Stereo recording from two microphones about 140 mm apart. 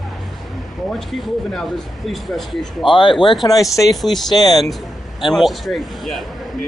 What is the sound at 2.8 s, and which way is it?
Speech, 35° left (ahead or behind).